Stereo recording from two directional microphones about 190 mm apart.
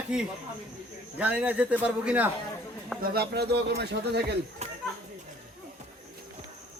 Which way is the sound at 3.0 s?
55° right (ahead or behind).